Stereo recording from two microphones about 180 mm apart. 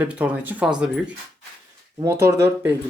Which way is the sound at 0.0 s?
5° right (ahead or behind).